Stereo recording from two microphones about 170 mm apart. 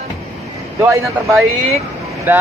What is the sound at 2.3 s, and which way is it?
Speech, 10° right (ahead or behind).